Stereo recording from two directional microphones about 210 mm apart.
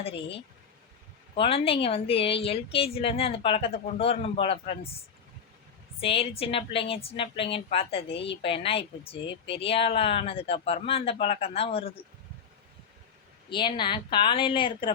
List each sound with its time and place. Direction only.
0.0 s a woman's voice: 25° left (ahead or behind)
6.0 s a woman's voice: 25° left (ahead or behind)
13.5 s a woman's voice: 20° left (ahead or behind)